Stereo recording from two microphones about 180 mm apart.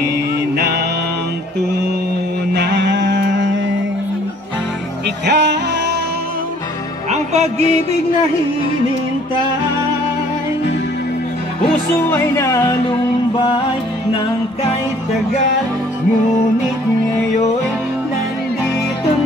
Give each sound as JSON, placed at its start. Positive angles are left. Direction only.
{"t": 2.5, "sound": "music", "side_deg": -75}
{"t": 5.2, "sound": "music", "side_deg": -70}
{"t": 7.1, "sound": "music", "side_deg": -35}
{"t": 12.1, "sound": "music", "side_deg": 15}